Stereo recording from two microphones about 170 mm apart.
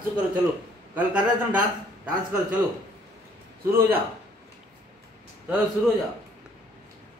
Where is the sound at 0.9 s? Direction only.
10° right (ahead or behind).